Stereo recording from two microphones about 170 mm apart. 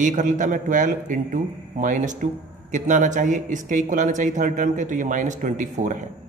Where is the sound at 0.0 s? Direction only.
45° right (ahead or behind).